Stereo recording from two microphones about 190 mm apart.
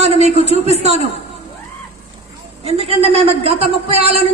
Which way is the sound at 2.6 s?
30° right (ahead or behind).